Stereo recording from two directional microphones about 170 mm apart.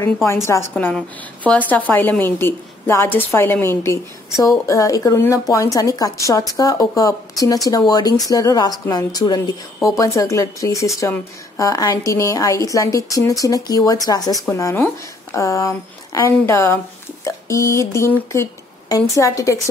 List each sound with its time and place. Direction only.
0.5 s a woman's voice: 10° left (ahead or behind)